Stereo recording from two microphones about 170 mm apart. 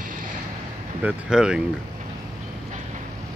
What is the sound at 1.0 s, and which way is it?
Speech, 5° right (ahead or behind).